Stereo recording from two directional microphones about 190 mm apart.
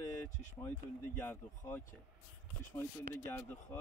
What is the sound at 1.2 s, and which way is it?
Speech, 10° left (ahead or behind).